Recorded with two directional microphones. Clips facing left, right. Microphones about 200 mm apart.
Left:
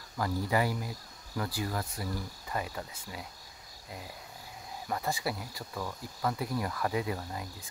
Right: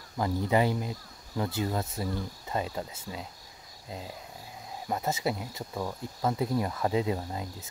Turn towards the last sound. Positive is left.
turn(degrees=-25)  # may be behind; listen again after turning